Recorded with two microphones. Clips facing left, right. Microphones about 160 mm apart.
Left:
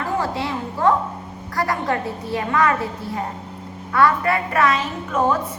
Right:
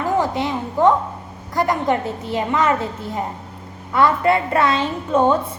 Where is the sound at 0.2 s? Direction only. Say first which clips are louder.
Right 3 dB; 20° right (ahead or behind).